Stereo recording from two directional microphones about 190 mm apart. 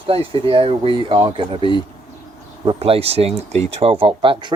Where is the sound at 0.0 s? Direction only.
30° right (ahead or behind).